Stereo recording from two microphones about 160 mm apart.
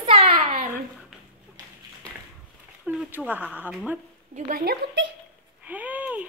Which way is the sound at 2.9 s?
10° right (ahead or behind).